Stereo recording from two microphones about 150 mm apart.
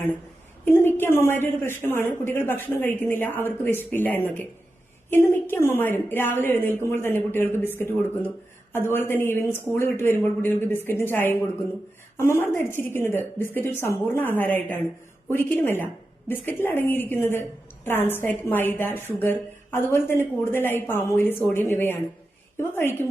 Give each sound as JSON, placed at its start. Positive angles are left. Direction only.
{"t": 0.6, "sound": "a woman's voice", "side_deg": 15}